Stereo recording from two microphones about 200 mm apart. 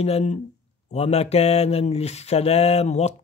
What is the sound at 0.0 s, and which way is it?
Speech, 35° left (ahead or behind).